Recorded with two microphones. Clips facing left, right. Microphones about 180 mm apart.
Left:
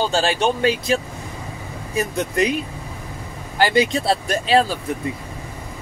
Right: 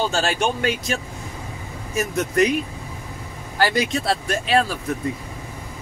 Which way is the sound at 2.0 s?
30° left (ahead or behind).